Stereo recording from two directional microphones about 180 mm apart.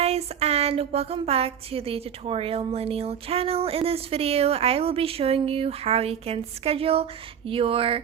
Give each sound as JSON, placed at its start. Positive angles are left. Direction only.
{"t": 0.0, "sound": "speech", "side_deg": -35}